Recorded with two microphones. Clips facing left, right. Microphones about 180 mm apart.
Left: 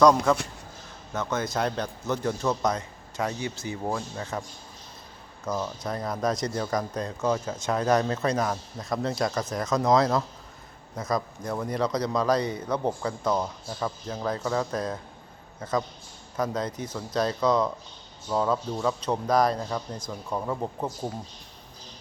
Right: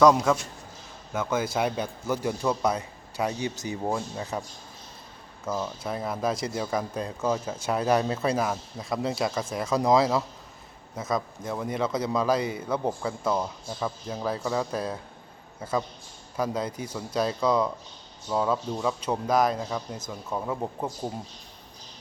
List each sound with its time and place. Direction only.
0.0 s a man's voice: 5° right (ahead or behind)
5.5 s a man's voice: 5° right (ahead or behind)
16.4 s a man's voice: 10° right (ahead or behind)